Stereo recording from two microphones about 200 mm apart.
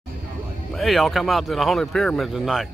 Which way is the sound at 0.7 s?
Centre (ahead or behind).